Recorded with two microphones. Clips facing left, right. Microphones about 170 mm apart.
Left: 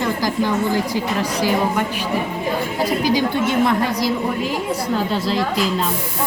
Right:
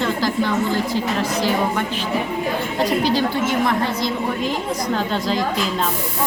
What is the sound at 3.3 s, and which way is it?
Speech, 20° left (ahead or behind).